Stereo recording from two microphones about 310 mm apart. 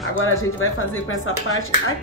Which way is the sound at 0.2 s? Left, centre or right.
Left.